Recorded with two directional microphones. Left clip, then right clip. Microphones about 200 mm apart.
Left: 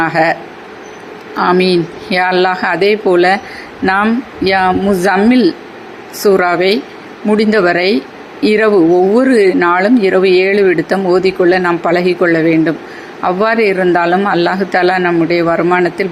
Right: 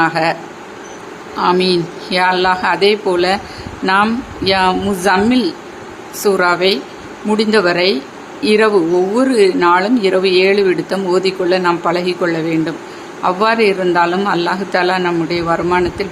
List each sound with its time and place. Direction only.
0.0 s speech: 20° left (ahead or behind)
1.4 s speech: 15° left (ahead or behind)